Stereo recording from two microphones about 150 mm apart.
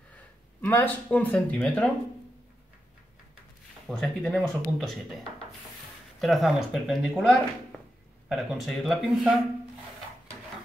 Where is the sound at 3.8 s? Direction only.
5° left (ahead or behind).